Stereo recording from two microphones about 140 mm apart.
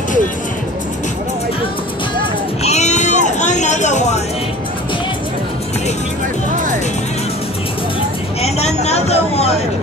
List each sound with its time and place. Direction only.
2.6 s music: 55° left (ahead or behind)
8.4 s vehicle: 50° left (ahead or behind)
8.8 s a sound: 50° left (ahead or behind)